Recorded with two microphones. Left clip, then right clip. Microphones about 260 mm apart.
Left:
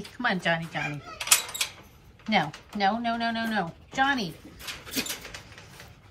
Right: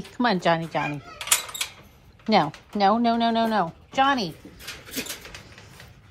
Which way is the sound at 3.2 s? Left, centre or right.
Right.